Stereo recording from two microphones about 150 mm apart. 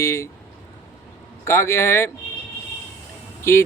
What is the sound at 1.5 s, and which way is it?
Speech, 15° left (ahead or behind).